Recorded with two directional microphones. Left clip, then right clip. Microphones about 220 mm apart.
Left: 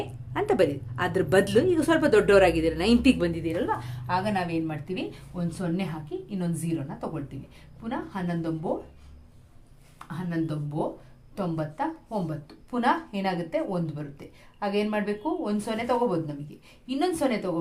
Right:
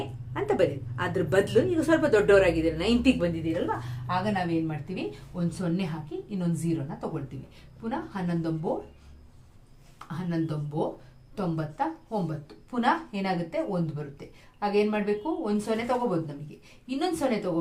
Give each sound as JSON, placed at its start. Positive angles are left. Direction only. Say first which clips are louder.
{"t": 0.3, "sound": "a woman's voice", "louder": "left 2 dB", "side_deg": 45}
{"t": 10.1, "sound": "speech", "louder": "left 1 dB", "side_deg": 25}